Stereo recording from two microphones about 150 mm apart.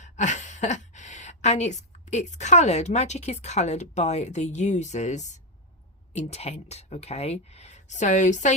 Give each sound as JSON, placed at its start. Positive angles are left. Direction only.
{"t": 0.0, "sound": "a woman's voice", "side_deg": 55}